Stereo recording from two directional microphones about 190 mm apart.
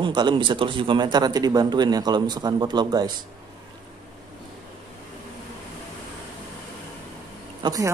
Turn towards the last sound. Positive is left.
turn(degrees=-20)  # may be behind; listen again after turning